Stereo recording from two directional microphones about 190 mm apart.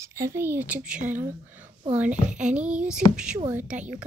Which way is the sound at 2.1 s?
40° right (ahead or behind).